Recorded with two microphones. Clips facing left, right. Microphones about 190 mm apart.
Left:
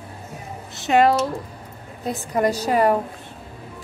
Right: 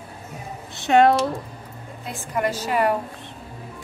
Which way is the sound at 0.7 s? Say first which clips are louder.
Right 1 dB; centre (ahead or behind).